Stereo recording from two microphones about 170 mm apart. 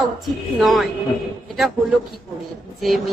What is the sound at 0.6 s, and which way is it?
Speech, centre (ahead or behind).